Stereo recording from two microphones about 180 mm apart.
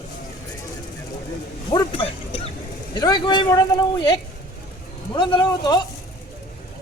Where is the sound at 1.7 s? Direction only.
30° left (ahead or behind).